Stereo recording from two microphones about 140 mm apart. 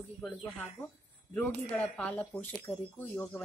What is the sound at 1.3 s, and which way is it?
Speech, 10° left (ahead or behind).